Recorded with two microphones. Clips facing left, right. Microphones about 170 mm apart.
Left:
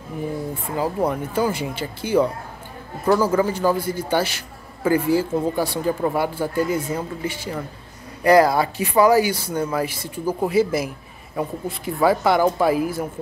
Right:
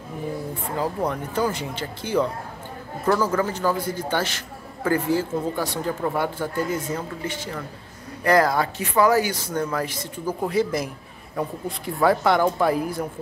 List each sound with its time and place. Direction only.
0.7 s speech: 10° left (ahead or behind)